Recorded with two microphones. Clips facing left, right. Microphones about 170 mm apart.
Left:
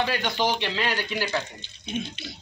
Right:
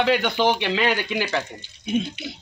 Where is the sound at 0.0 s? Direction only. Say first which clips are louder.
Right 6 dB; 60° right (ahead or behind).